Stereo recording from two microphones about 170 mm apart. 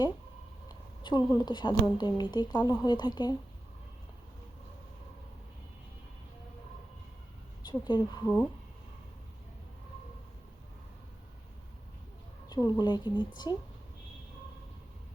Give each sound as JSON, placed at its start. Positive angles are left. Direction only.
{"t": 1.0, "sound": "a woman's voice", "side_deg": 25}
{"t": 7.7, "sound": "a woman's voice", "side_deg": 25}
{"t": 12.5, "sound": "a sound", "side_deg": 25}
{"t": 12.8, "sound": "a woman's voice", "side_deg": 25}